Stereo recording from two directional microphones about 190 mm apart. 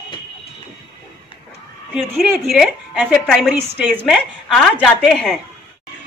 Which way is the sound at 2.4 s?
Centre (ahead or behind).